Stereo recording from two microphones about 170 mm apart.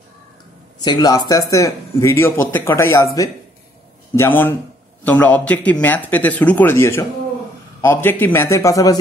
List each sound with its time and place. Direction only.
0.7 s speech: 25° left (ahead or behind)